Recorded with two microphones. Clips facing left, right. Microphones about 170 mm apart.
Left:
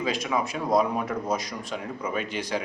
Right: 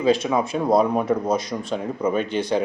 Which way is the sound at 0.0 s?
30° right (ahead or behind).